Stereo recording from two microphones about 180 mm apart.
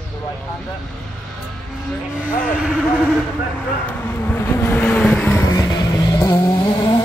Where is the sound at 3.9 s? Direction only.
10° left (ahead or behind).